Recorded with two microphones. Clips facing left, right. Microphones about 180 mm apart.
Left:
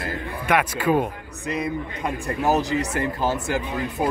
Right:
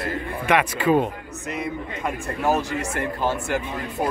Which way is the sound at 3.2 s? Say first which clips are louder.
Right 2 dB; 40° left (ahead or behind).